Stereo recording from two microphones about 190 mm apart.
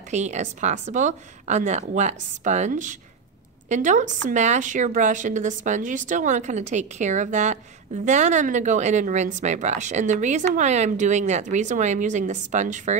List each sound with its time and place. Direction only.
0.1 s a woman's voice: 40° right (ahead or behind)